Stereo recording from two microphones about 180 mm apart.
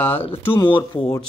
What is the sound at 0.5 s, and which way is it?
Speech, 25° left (ahead or behind).